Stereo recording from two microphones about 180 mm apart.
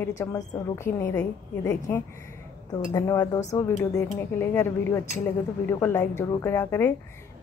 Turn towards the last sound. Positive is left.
turn(degrees=15)  # may be behind; listen again after turning